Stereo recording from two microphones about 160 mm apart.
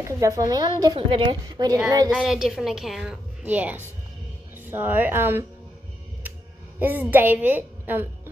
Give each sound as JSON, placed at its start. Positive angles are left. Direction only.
{"t": 0.0, "sound": "a woman's voice", "side_deg": -20}
{"t": 2.0, "sound": "a woman's voice", "side_deg": -5}
{"t": 6.8, "sound": "a woman's voice", "side_deg": -10}